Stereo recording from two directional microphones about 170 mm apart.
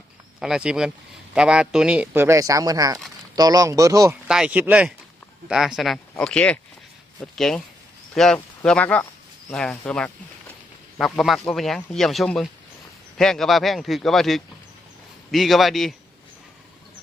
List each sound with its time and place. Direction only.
0.3 s a man's voice: 5° right (ahead or behind); by 4.2 s 20° right (ahead or behind)
4.3 s speech: 5° right (ahead or behind)